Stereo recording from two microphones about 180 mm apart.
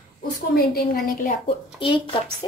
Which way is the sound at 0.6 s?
55° left (ahead or behind).